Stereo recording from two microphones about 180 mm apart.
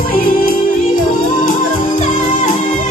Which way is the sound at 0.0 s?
55° left (ahead or behind).